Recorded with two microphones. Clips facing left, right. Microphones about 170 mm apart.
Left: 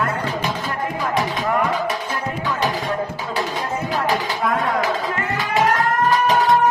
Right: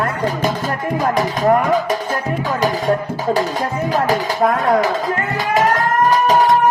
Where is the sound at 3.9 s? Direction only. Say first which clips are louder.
Right 5 dB; 45° right (ahead or behind).